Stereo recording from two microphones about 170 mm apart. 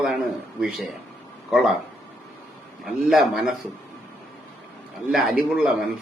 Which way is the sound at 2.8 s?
Centre (ahead or behind).